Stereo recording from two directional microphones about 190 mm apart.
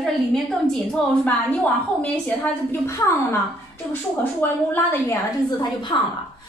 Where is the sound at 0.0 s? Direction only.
Centre (ahead or behind).